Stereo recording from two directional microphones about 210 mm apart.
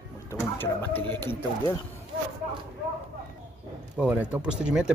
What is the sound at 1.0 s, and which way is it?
Speech, 20° right (ahead or behind).